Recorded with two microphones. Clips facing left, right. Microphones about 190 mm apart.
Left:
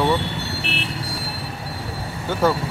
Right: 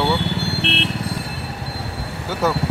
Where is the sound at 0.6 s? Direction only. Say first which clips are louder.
Right 5 dB; 80° right.